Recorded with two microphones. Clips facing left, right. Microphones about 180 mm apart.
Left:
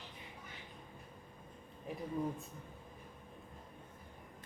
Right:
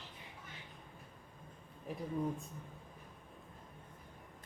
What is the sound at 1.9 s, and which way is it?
Speech, centre (ahead or behind).